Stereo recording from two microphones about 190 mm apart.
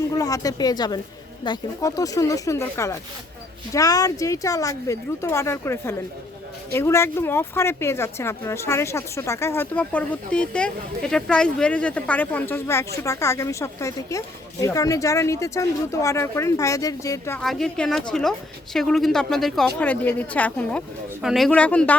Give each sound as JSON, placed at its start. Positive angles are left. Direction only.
{"t": 0.1, "sound": "speech", "side_deg": 20}
{"t": 17.4, "sound": "a woman's voice", "side_deg": 0}